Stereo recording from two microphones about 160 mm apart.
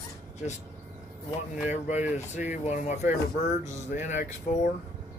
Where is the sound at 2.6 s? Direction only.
45° left (ahead or behind).